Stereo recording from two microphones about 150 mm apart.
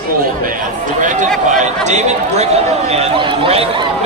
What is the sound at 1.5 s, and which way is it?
Speech, 50° right (ahead or behind).